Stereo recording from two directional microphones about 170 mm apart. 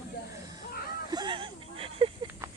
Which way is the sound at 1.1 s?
25° right (ahead or behind).